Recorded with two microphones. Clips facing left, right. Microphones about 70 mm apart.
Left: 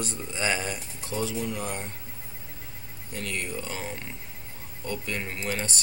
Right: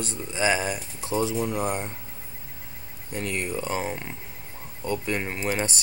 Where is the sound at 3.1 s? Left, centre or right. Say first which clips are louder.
Right 4 dB; right.